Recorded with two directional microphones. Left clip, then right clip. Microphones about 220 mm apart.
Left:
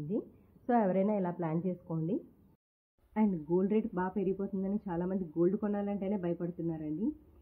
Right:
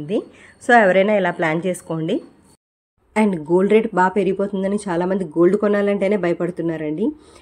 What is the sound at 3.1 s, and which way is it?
Speech, 30° right (ahead or behind).